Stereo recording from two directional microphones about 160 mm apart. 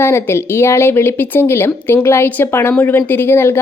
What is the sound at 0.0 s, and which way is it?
A woman's voice, 15° left (ahead or behind).